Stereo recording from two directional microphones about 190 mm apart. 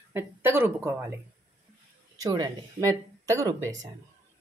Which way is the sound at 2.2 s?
15° right (ahead or behind).